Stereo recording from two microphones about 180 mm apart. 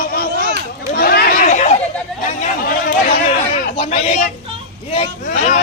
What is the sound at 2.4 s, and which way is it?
Speech, 50° left (ahead or behind).